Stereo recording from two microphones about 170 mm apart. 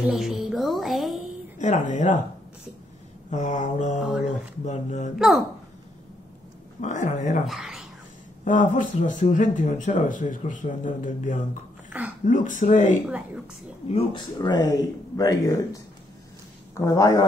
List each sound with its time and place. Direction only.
0.0 s music: centre (ahead or behind)
1.6 s speech: 45° left (ahead or behind)
3.3 s speech: 45° left (ahead or behind)
6.8 s speech: 45° left (ahead or behind)
7.4 s a sound: centre (ahead or behind)
8.5 s speech: 50° left (ahead or behind)
13.8 s speech: 35° left (ahead or behind)
14.4 s speech: 20° left (ahead or behind)